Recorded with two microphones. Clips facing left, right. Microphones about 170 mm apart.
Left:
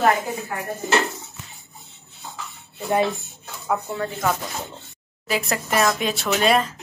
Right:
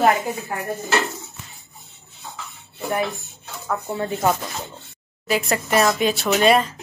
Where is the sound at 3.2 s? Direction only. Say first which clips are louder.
Right 2 dB; centre (ahead or behind).